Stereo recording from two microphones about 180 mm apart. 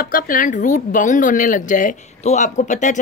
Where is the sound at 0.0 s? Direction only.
50° left (ahead or behind).